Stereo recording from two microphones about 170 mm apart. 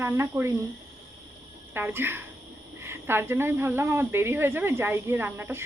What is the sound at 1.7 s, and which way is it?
Speech, 10° right (ahead or behind).